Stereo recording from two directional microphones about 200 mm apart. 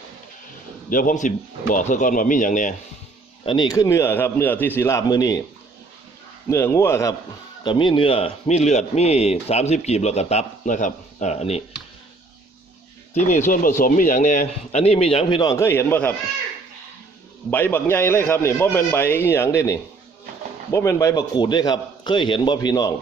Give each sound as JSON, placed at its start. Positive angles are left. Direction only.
{"t": 0.9, "sound": "speech", "side_deg": 45}
{"t": 3.4, "sound": "a man's voice", "side_deg": 25}
{"t": 6.5, "sound": "a man's voice", "side_deg": 15}
{"t": 13.1, "sound": "speech", "side_deg": 40}
{"t": 17.5, "sound": "a man's voice", "side_deg": 10}